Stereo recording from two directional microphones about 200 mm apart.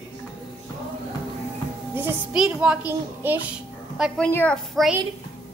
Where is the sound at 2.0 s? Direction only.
5° right (ahead or behind).